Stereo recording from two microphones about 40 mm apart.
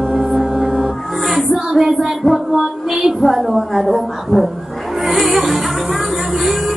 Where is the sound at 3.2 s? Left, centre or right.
Centre.